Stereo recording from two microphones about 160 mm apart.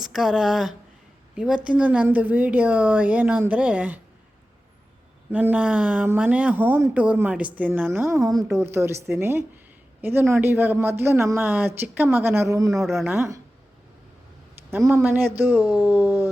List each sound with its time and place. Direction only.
0.0 s speech: centre (ahead or behind)
5.3 s speech: 10° right (ahead or behind)
12.7 s speech: centre (ahead or behind)
13.1 s speech: 15° right (ahead or behind)
14.9 s speech: 15° right (ahead or behind)